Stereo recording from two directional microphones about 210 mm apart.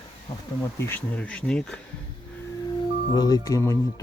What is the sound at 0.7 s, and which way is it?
Speech, 10° left (ahead or behind).